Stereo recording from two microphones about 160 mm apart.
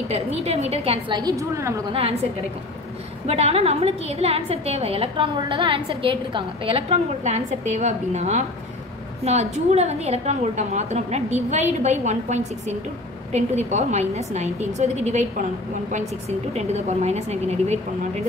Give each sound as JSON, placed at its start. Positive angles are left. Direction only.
{"t": 0.1, "sound": "a woman's voice", "side_deg": -40}
{"t": 1.9, "sound": "a woman's voice", "side_deg": -35}
{"t": 3.3, "sound": "a woman's voice", "side_deg": -40}